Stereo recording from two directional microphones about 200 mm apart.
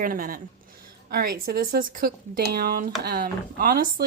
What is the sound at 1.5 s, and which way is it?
Speech, 45° right (ahead or behind).